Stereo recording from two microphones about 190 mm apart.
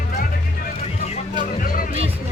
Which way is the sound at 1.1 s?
45° left (ahead or behind).